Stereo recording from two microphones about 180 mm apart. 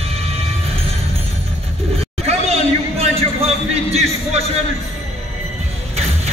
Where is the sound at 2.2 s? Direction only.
35° right (ahead or behind).